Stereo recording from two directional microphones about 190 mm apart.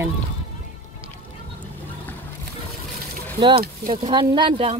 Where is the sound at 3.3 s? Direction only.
25° right (ahead or behind).